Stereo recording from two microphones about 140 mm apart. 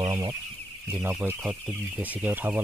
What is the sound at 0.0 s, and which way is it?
Chicken, 25° right (ahead or behind).